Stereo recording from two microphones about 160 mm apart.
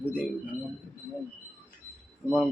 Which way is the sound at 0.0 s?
10° right (ahead or behind).